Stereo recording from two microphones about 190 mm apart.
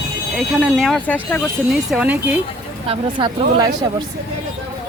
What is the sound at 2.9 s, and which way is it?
Speech, 25° right (ahead or behind).